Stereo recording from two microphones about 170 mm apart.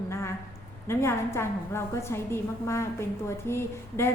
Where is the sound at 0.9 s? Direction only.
15° left (ahead or behind).